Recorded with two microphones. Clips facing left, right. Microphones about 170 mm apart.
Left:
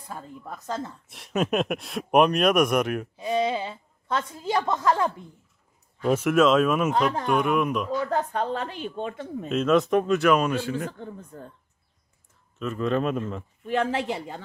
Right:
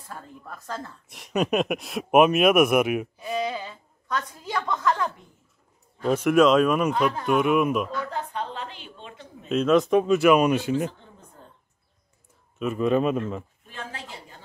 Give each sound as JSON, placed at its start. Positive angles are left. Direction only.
{"t": 0.0, "sound": "a woman's voice", "side_deg": 20}
{"t": 1.0, "sound": "speech", "side_deg": 0}
{"t": 3.2, "sound": "a woman's voice", "side_deg": 25}
{"t": 6.0, "sound": "speech", "side_deg": 5}
{"t": 6.9, "sound": "speech", "side_deg": 40}
{"t": 7.2, "sound": "speech", "side_deg": -5}
{"t": 8.1, "sound": "a woman's voice", "side_deg": 45}
{"t": 9.5, "sound": "speech", "side_deg": 0}
{"t": 10.9, "sound": "a woman's voice", "side_deg": 55}
{"t": 12.5, "sound": "speech", "side_deg": -10}
{"t": 13.7, "sound": "speech", "side_deg": 75}